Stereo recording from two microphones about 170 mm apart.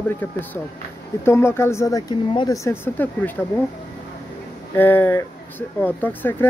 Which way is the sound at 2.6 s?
10° left (ahead or behind).